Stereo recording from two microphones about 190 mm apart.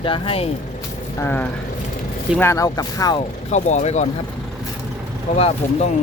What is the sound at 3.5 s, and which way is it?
Speech, 35° left (ahead or behind).